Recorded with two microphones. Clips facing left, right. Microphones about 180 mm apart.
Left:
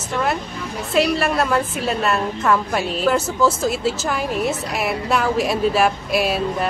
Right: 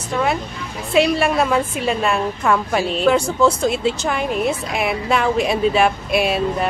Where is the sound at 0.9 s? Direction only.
Centre (ahead or behind).